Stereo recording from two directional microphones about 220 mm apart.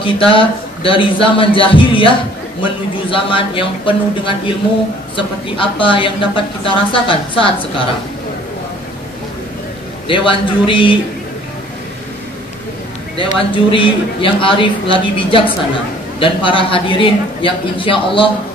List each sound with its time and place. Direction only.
0.0 s a man's voice: 25° left (ahead or behind)
10.0 s a man's voice: 25° left (ahead or behind)
13.4 s a man's voice: 25° left (ahead or behind)